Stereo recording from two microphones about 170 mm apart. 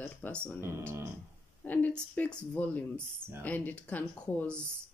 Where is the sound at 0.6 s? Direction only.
15° right (ahead or behind).